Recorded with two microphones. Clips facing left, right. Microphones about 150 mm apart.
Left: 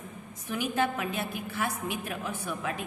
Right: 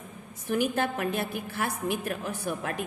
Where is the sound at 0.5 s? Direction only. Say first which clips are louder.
Right 2 dB; 50° right (ahead or behind).